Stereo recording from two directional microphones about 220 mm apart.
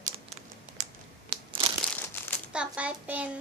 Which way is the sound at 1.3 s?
25° right (ahead or behind).